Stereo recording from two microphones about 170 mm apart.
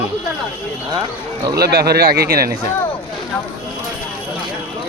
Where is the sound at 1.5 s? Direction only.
65° right (ahead or behind).